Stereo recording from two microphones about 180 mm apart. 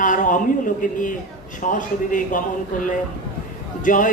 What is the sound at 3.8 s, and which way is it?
Speech, 45° left (ahead or behind).